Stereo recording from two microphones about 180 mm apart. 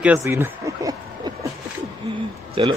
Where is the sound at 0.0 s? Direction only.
10° right (ahead or behind).